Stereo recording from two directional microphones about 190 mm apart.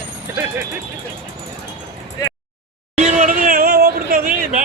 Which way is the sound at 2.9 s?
40° right (ahead or behind).